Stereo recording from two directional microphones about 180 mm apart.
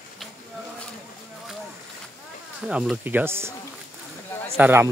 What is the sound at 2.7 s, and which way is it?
Speech, 5° right (ahead or behind).